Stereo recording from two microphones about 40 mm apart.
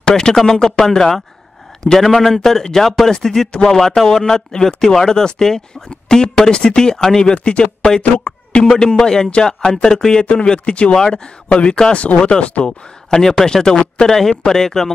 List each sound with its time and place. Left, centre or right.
0.0 s speech: centre
1.9 s speech: centre; by 8.4 s left
8.6 s speech: centre; by 12.6 s left
12.6 s speech: centre